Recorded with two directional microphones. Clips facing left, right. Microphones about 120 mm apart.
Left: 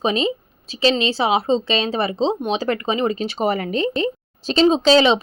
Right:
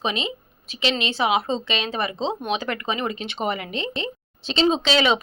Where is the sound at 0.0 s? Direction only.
35° left (ahead or behind).